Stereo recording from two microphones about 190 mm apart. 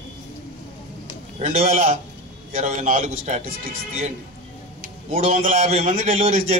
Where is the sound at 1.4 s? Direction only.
40° right (ahead or behind).